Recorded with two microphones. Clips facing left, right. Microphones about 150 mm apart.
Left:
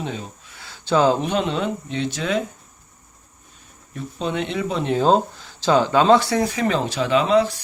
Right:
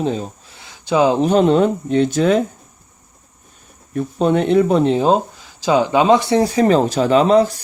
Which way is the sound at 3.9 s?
50° right (ahead or behind).